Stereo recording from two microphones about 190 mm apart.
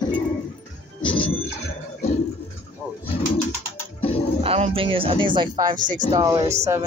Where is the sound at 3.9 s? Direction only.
30° left (ahead or behind).